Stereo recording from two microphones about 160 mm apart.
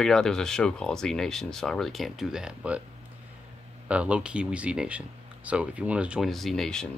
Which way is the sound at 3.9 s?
10° right (ahead or behind).